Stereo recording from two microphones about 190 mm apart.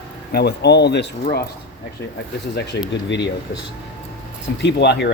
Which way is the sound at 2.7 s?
65° left (ahead or behind).